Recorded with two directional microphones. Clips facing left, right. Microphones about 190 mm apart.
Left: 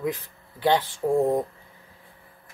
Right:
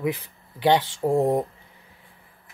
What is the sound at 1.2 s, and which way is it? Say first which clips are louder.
Speech: right 1 dB; 15° right (ahead or behind).